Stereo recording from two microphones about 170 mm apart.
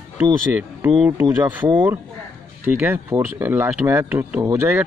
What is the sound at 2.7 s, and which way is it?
Speech, 15° right (ahead or behind).